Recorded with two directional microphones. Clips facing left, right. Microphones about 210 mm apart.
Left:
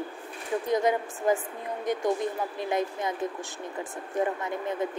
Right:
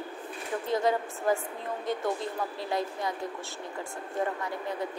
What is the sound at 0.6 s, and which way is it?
A woman's voice, 20° left (ahead or behind).